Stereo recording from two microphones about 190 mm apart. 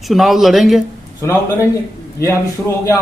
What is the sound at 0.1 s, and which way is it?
Speech, centre (ahead or behind).